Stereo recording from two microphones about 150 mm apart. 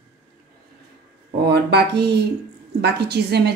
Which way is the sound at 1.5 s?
90° right.